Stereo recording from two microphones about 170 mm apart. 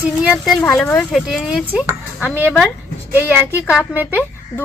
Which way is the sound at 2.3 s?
10° right (ahead or behind).